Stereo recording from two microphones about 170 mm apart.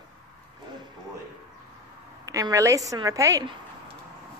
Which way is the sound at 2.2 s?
20° right (ahead or behind).